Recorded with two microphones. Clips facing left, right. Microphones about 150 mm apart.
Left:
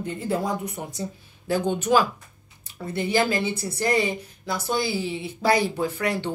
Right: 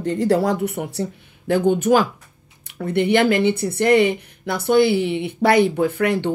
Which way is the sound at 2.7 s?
65° right (ahead or behind).